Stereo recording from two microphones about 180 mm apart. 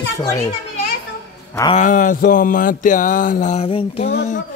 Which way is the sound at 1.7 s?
45° left (ahead or behind).